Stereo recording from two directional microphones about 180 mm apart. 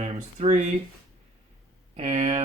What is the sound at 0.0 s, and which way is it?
Speech, 40° right (ahead or behind).